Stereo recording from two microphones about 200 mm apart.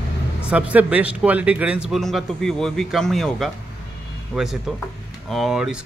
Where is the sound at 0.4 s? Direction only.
5° right (ahead or behind).